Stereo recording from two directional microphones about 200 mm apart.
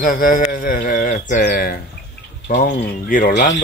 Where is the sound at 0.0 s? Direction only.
45° left (ahead or behind).